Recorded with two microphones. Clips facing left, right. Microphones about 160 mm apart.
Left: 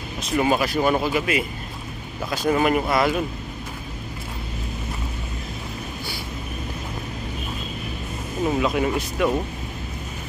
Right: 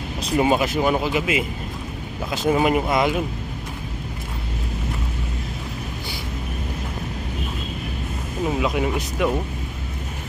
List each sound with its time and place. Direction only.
0.2 s speech: 25° right (ahead or behind)
8.5 s speech: 10° right (ahead or behind)